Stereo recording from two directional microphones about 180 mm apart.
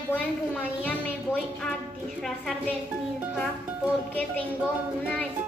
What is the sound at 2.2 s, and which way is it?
Music, centre (ahead or behind).